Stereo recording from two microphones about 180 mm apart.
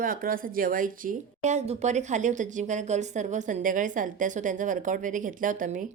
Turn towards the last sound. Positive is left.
turn(degrees=-45)  # may be behind; listen again after turning